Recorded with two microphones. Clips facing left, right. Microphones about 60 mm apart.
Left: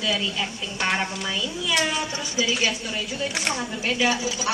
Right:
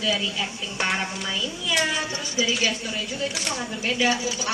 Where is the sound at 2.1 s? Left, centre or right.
Centre.